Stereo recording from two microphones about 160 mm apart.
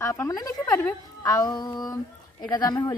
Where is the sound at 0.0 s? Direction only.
20° left (ahead or behind).